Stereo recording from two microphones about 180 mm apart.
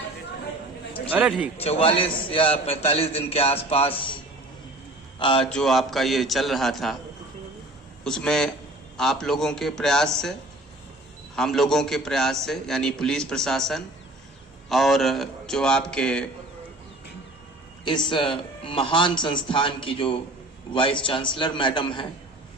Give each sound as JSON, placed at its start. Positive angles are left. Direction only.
{"t": 1.1, "sound": "speech", "side_deg": -10}
{"t": 1.6, "sound": "a man's voice", "side_deg": 30}
{"t": 5.2, "sound": "a man's voice", "side_deg": 30}
{"t": 5.5, "sound": "a man's voice", "side_deg": 5}
{"t": 8.0, "sound": "a man's voice", "side_deg": 5}
{"t": 11.3, "sound": "a man's voice", "side_deg": 0}
{"t": 17.8, "sound": "a man's voice", "side_deg": 25}